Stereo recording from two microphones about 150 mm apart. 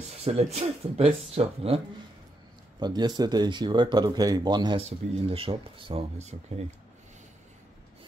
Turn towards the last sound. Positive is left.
turn(degrees=-45)  # may be behind; listen again after turning